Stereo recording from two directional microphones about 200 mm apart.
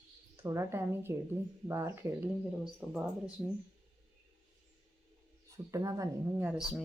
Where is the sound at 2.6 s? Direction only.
Centre (ahead or behind).